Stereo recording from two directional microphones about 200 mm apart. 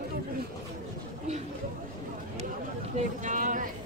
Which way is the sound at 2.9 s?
40° right (ahead or behind).